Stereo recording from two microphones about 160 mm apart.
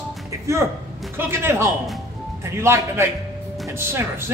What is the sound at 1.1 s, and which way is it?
Speech, 15° right (ahead or behind).